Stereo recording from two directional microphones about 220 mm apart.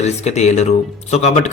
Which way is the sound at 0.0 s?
30° left (ahead or behind).